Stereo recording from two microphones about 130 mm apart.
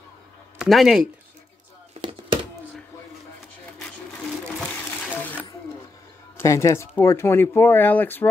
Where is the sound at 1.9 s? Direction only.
40° right (ahead or behind).